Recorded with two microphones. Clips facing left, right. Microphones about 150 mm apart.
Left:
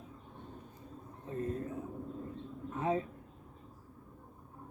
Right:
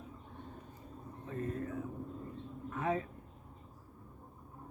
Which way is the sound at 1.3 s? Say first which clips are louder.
Left 2 dB; 30° left (ahead or behind).